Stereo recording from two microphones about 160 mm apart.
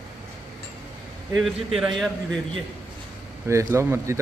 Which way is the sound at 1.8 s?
Centre (ahead or behind).